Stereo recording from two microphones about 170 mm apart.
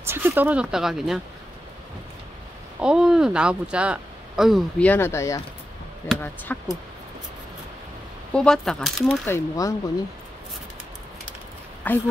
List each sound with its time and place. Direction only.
0.0 s speech: 15° right (ahead or behind)
2.8 s speech: 5° right (ahead or behind)
4.8 s speech: 15° left (ahead or behind)
8.3 s speech: 5° left (ahead or behind)
9.2 s speech: 15° left (ahead or behind)
11.9 s speech: 10° left (ahead or behind)